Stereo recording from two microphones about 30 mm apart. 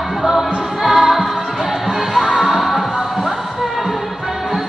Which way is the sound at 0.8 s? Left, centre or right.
Centre.